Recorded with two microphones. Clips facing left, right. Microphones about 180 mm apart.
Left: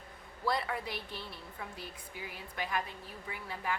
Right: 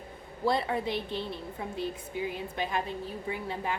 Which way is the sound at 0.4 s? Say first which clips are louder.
Right 6 dB; 25° right (ahead or behind).